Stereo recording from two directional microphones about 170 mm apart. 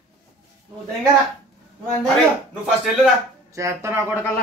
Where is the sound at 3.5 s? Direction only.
15° right (ahead or behind).